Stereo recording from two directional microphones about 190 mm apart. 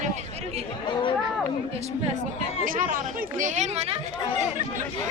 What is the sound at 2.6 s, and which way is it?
Speech, 45° right (ahead or behind).